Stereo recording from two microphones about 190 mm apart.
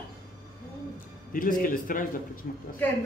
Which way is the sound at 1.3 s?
45° left (ahead or behind).